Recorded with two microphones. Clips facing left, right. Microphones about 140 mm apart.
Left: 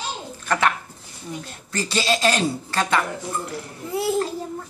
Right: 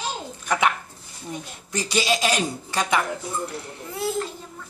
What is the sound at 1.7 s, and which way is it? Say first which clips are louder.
Speech: left 1 dB; 15° right (ahead or behind).